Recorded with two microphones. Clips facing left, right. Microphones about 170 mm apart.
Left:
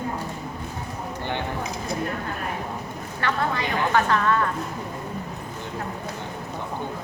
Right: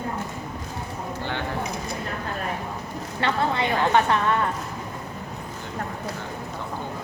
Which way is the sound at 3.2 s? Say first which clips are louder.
Right 2 dB; 25° right (ahead or behind).